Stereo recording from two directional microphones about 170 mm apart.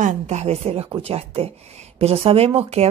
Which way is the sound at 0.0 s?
45° right (ahead or behind).